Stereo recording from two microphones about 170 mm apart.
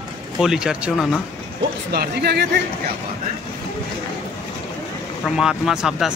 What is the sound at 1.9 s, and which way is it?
Speech, 70° right (ahead or behind).